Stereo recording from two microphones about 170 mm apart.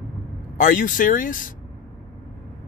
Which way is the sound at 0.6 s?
55° left (ahead or behind).